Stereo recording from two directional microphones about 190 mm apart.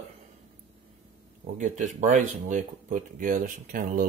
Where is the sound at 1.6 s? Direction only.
40° right (ahead or behind).